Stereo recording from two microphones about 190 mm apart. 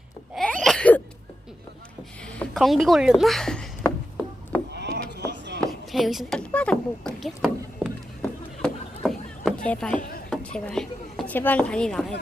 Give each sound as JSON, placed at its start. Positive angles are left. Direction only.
{"t": 0.3, "sound": "sneeze", "side_deg": 5}
{"t": 2.2, "sound": "speech", "side_deg": 5}
{"t": 4.7, "sound": "a sound", "side_deg": -60}
{"t": 5.9, "sound": "rowboat", "side_deg": 0}
{"t": 9.6, "sound": "speech", "side_deg": 5}